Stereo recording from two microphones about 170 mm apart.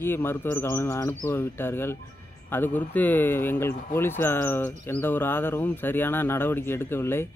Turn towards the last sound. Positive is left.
turn(degrees=15)  # may be behind; listen again after turning